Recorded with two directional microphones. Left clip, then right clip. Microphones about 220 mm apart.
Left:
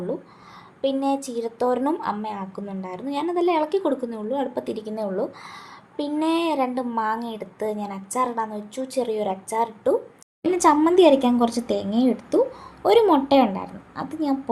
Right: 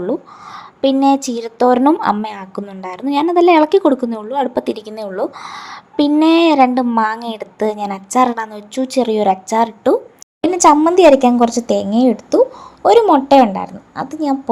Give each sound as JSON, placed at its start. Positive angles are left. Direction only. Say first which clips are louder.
{"t": 0.1, "sound": "a woman's voice", "louder": "right 9 dB", "side_deg": -30}